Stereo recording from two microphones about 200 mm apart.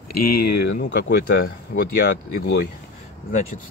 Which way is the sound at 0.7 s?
55° left (ahead or behind).